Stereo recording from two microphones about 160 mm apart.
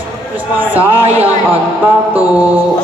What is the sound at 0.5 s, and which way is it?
Speech, 10° right (ahead or behind).